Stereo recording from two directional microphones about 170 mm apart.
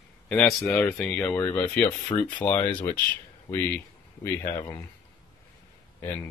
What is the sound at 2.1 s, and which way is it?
Speech, 30° left (ahead or behind).